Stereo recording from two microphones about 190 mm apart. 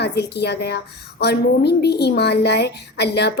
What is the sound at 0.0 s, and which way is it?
A woman's voice, 60° left (ahead or behind).